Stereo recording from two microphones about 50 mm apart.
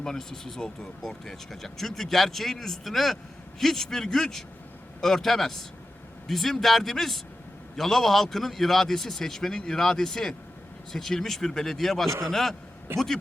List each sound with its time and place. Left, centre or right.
0.0 s a man's voice: centre
12.9 s a man's voice: right